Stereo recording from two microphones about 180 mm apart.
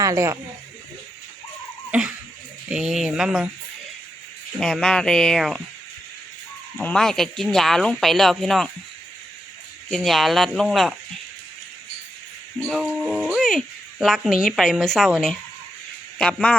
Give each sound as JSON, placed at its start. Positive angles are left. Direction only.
{"t": 0.0, "sound": "speech", "side_deg": -15}
{"t": 1.9, "sound": "a sound", "side_deg": -5}
{"t": 2.6, "sound": "speech", "side_deg": -5}
{"t": 4.6, "sound": "speech", "side_deg": 5}
{"t": 6.7, "sound": "speech", "side_deg": 5}
{"t": 9.9, "sound": "speech", "side_deg": 0}
{"t": 12.5, "sound": "speech", "side_deg": 0}